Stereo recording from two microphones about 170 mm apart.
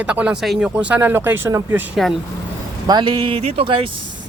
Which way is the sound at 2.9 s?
25° right (ahead or behind).